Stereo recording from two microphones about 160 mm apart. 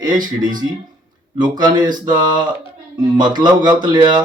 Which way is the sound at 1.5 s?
25° right (ahead or behind).